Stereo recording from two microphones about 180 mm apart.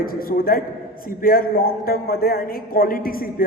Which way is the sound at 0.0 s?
55° left (ahead or behind).